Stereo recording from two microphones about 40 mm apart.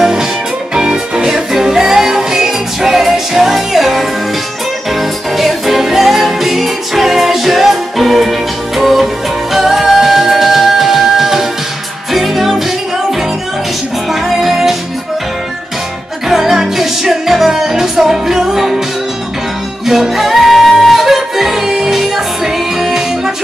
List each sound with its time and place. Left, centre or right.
0.0 s music: centre
5.4 s music: centre
14.2 s music: centre
16.3 s music: centre
19.9 s music: centre
20.8 s yodeling: centre